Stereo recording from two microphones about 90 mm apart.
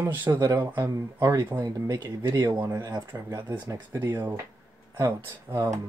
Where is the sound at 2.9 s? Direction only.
50° right (ahead or behind).